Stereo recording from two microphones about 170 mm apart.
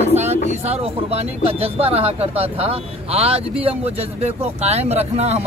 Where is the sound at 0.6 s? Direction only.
35° right (ahead or behind).